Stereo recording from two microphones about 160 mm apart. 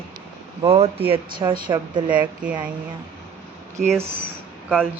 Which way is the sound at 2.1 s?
10° right (ahead or behind).